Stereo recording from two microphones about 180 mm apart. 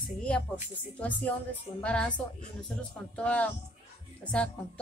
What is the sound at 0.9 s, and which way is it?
A woman's voice, 10° left (ahead or behind).